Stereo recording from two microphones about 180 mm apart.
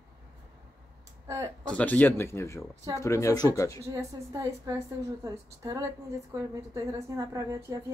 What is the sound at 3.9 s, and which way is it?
Speech, 15° right (ahead or behind).